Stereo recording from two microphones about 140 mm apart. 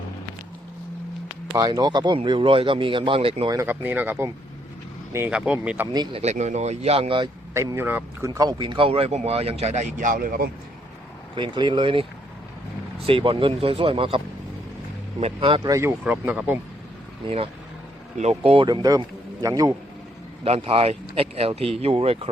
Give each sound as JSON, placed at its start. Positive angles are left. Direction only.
{"t": 1.5, "sound": "speech", "side_deg": -30}
{"t": 3.5, "sound": "speech", "side_deg": -15}
{"t": 5.3, "sound": "speech", "side_deg": -10}
{"t": 5.9, "sound": "speech", "side_deg": -30}
{"t": 6.3, "sound": "speech", "side_deg": -55}
{"t": 7.5, "sound": "speech", "side_deg": -20}
{"t": 11.3, "sound": "speech", "side_deg": -35}
{"t": 13.1, "sound": "speech", "side_deg": -40}
{"t": 15.2, "sound": "speech", "side_deg": -40}
{"t": 15.7, "sound": "speech", "side_deg": -15}
{"t": 17.2, "sound": "speech", "side_deg": -40}
{"t": 18.7, "sound": "a man's voice", "side_deg": -30}
{"t": 20.4, "sound": "speech", "side_deg": -45}